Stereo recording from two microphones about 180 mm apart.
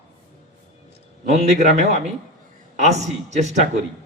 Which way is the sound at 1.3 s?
40° right (ahead or behind).